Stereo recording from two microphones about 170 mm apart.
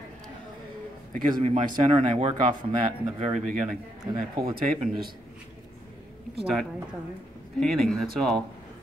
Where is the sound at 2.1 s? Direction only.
45° right (ahead or behind).